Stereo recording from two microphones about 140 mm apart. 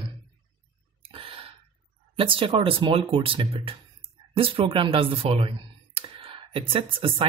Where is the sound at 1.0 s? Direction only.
40° right (ahead or behind).